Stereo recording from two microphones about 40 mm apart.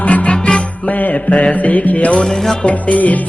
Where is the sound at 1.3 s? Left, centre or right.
Left.